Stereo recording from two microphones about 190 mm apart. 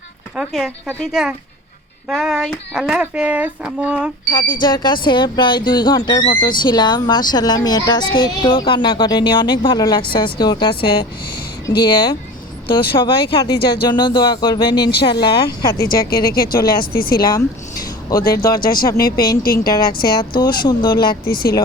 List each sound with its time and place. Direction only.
0.3 s speech: centre (ahead or behind)
4.3 s a child's voice: 25° left (ahead or behind)
15.8 s speech: 55° left (ahead or behind)
18.6 s speech: 50° left (ahead or behind)
20.6 s a child's voice: 20° left (ahead or behind)
21.2 s speech: 55° left (ahead or behind)